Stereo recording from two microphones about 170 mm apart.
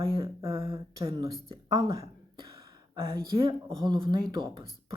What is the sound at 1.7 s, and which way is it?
Speech, 20° right (ahead or behind).